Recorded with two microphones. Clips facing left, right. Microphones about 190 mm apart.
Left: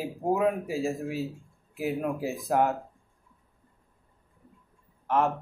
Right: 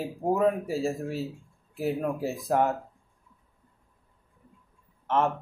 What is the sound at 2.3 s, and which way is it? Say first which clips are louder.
Speech: even; centre (ahead or behind).